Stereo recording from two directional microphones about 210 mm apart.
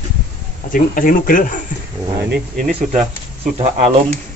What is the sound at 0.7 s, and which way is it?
Speech, 40° left (ahead or behind).